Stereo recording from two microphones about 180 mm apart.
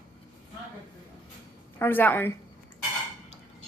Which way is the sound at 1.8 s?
10° left (ahead or behind).